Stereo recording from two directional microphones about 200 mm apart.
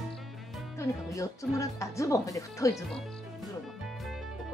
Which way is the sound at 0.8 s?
15° left (ahead or behind).